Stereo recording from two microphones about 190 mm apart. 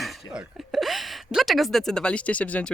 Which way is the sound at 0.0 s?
Centre (ahead or behind).